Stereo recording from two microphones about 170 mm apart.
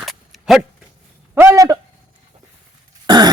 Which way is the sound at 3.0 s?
25° right (ahead or behind).